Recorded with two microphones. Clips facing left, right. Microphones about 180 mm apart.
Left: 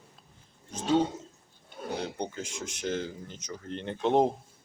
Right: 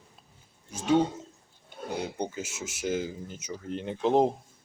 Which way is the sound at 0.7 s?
10° right (ahead or behind).